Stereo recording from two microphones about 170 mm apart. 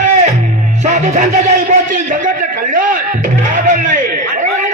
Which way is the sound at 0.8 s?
45° right (ahead or behind).